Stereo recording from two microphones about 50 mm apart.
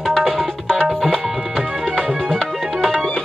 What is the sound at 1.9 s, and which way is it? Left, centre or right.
Music, centre.